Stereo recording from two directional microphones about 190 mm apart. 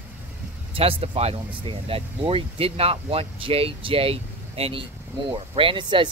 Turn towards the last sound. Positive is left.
turn(degrees=-25)  # may be behind; listen again after turning